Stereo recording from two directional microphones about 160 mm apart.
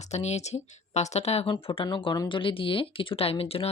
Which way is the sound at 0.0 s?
45° left (ahead or behind).